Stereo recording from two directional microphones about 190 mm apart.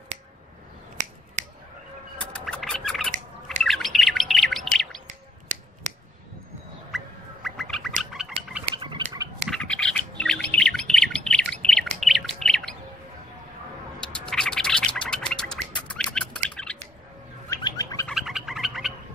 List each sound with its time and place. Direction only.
2.1 s scratch: 5° left (ahead or behind)
3.4 s bird: centre (ahead or behind)
6.9 s fowl: centre (ahead or behind)
7.4 s bird: centre (ahead or behind)
8.0 s a sound: 5° right (ahead or behind)
8.7 s a sound: 25° right (ahead or behind)
9.5 s bird: 5° left (ahead or behind)
14.0 s gargling: 5° left (ahead or behind)
16.1 s a sound: 5° left (ahead or behind)
17.5 s bird: 20° left (ahead or behind)
18.0 s bird: centre (ahead or behind)